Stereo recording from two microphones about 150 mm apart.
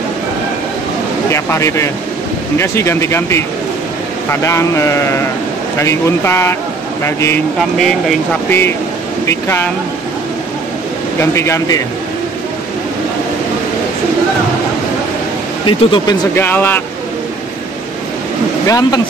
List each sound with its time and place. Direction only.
1.3 s speech: 20° left (ahead or behind)
8.5 s speech: 15° left (ahead or behind)
11.1 s speech: 20° left (ahead or behind)
15.6 s speech: 35° left (ahead or behind)
16.3 s speech: 15° left (ahead or behind)
18.7 s speech: 25° left (ahead or behind)